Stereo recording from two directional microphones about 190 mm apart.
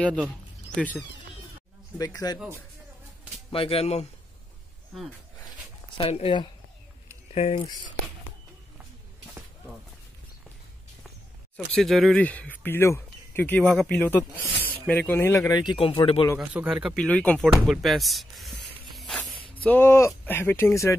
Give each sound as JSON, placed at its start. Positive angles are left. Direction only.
{"t": 0.7, "sound": "speech", "side_deg": 5}
{"t": 2.0, "sound": "speech", "side_deg": 20}
{"t": 3.4, "sound": "speech", "side_deg": 30}
{"t": 5.9, "sound": "speech", "side_deg": 30}
{"t": 11.5, "sound": "speech", "side_deg": 0}
{"t": 14.6, "sound": "snake", "side_deg": 10}
{"t": 15.0, "sound": "speech", "side_deg": 15}
{"t": 16.3, "sound": "a man's voice", "side_deg": -5}
{"t": 16.9, "sound": "speech", "side_deg": 5}
{"t": 18.9, "sound": "a sound", "side_deg": 0}
{"t": 19.5, "sound": "speech", "side_deg": 10}